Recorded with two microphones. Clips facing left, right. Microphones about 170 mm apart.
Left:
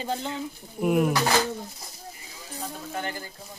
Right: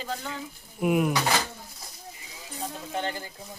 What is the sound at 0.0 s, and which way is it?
Speech, 25° left (ahead or behind).